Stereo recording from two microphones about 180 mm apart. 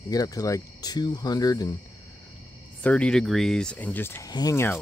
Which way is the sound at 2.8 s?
5° left (ahead or behind).